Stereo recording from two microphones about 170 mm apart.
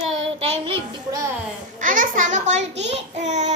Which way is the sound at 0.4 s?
40° right (ahead or behind).